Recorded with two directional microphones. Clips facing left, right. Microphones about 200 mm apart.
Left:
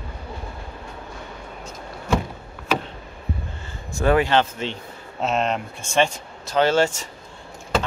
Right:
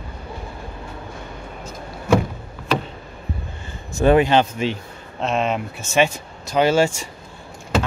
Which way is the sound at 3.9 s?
20° right (ahead or behind).